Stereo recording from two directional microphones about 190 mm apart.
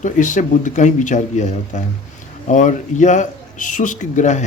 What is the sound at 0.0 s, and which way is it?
Speech, 40° left (ahead or behind).